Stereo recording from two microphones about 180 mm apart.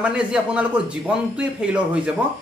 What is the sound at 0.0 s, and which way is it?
A man's voice, 5° right (ahead or behind).